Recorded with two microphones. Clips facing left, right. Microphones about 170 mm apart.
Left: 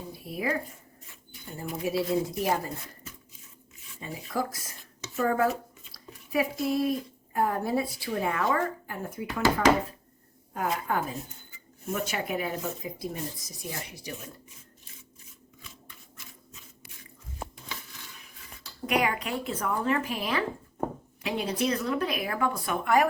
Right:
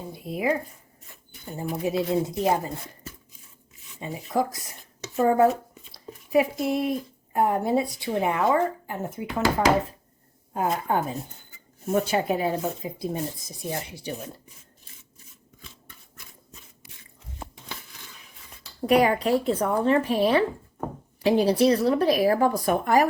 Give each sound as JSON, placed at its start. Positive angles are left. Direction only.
{"t": 0.1, "sound": "speech", "side_deg": -20}
{"t": 1.5, "sound": "speech", "side_deg": -20}
{"t": 4.0, "sound": "speech", "side_deg": -25}
{"t": 5.1, "sound": "a sound", "side_deg": -25}
{"t": 7.3, "sound": "speech", "side_deg": -20}
{"t": 10.5, "sound": "speech", "side_deg": -25}
{"t": 18.9, "sound": "speech", "side_deg": -35}